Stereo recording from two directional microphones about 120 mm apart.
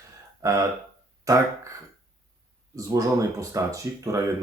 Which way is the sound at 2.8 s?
25° right (ahead or behind).